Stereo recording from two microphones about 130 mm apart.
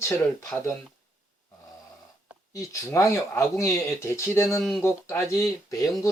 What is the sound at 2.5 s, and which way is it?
Speech, 25° left (ahead or behind).